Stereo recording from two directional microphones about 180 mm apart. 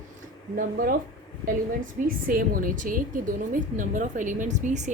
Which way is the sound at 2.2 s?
50° right (ahead or behind).